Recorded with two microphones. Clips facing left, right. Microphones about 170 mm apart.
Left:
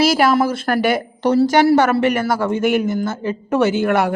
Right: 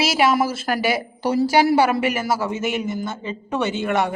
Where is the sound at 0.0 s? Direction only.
5° right (ahead or behind).